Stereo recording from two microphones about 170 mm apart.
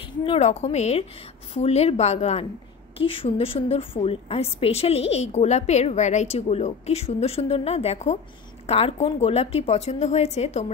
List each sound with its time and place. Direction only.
0.0 s a woman's voice: 30° left (ahead or behind)